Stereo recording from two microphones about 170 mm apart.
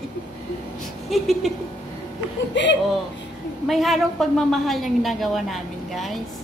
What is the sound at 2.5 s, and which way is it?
Speech, 90° left.